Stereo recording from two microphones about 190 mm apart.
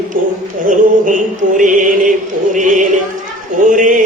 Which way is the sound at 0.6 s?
45° right (ahead or behind).